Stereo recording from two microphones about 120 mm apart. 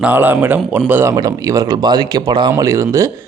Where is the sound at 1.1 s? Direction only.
30° right (ahead or behind).